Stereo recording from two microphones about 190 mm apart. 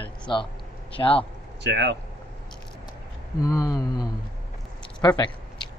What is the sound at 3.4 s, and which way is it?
Speech, 20° left (ahead or behind).